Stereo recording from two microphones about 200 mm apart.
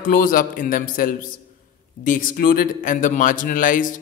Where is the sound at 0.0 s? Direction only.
45° left (ahead or behind).